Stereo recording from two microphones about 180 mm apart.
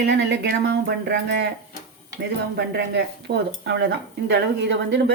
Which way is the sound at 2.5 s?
70° right (ahead or behind).